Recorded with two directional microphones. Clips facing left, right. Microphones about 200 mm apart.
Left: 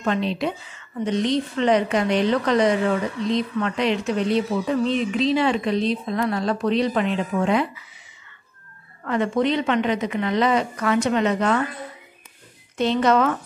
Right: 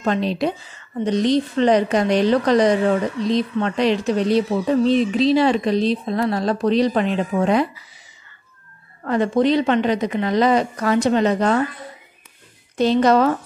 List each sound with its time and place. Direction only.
0.0 s a woman's voice: 40° right (ahead or behind)
9.0 s a woman's voice: 35° right (ahead or behind)
12.7 s a woman's voice: 35° right (ahead or behind)